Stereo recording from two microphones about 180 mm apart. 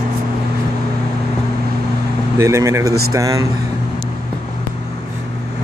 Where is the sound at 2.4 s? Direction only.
15° right (ahead or behind).